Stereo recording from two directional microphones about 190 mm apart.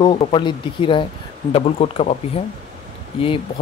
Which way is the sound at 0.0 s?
25° left (ahead or behind).